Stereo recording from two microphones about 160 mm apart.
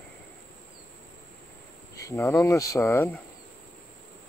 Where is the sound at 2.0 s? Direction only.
20° left (ahead or behind).